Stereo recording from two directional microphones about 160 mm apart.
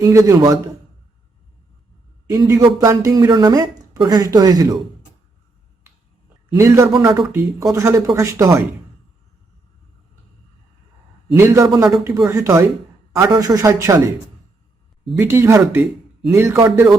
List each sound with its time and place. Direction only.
0.0 s speech: 20° right (ahead or behind)
2.3 s speech: 20° right (ahead or behind)
6.5 s speech: 20° right (ahead or behind)
11.3 s speech: 15° right (ahead or behind)
15.2 s a man's voice: 15° right (ahead or behind)